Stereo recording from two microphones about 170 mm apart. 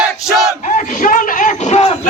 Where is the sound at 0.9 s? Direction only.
50° left (ahead or behind).